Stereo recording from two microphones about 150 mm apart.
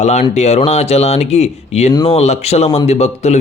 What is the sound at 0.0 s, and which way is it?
Speech, 50° left (ahead or behind).